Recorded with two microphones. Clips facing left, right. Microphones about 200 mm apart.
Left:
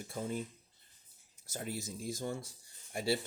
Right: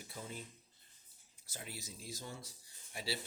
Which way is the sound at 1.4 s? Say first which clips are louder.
Left 9 dB; 45° left (ahead or behind).